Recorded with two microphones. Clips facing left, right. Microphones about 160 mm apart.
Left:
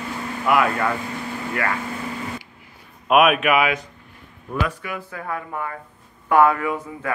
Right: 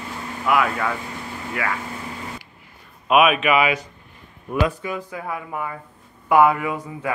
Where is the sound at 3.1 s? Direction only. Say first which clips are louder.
Even; centre (ahead or behind).